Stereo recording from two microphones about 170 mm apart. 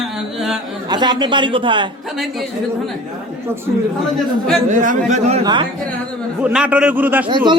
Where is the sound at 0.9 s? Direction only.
25° right (ahead or behind).